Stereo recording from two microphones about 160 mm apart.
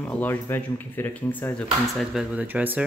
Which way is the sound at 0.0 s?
10° left (ahead or behind).